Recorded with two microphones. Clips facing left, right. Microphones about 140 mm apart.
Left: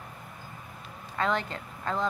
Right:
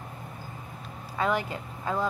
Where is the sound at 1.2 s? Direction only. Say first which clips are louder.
Right 1 dB; 10° right (ahead or behind).